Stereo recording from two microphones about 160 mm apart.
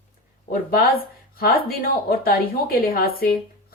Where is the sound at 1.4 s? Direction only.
70° left (ahead or behind).